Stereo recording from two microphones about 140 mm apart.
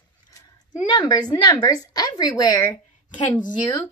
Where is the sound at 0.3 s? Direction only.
25° left (ahead or behind).